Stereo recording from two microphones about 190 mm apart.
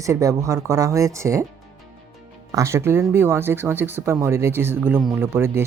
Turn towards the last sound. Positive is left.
turn(degrees=-15)  # may be behind; listen again after turning